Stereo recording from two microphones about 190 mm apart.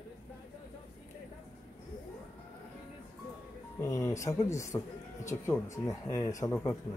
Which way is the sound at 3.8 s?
15° left (ahead or behind).